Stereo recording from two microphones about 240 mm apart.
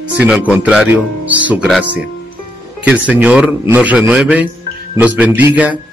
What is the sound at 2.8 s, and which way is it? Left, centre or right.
A man's voice, centre.